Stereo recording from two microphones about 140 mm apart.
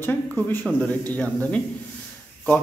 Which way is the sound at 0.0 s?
15° left (ahead or behind).